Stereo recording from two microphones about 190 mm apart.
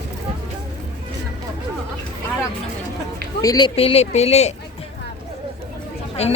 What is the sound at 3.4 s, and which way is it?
Speech, 20° left (ahead or behind).